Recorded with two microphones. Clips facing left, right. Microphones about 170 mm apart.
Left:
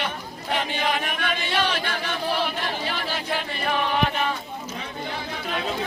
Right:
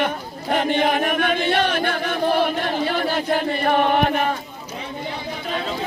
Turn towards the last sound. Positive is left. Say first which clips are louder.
# right 5 dB
turn(degrees=-50)  # may be behind; listen again after turning